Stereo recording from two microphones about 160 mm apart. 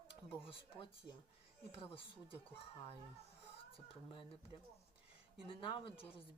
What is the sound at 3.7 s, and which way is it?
Speech, 30° left (ahead or behind).